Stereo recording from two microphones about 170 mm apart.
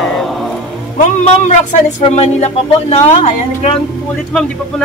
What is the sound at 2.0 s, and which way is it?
Speech, 40° left (ahead or behind).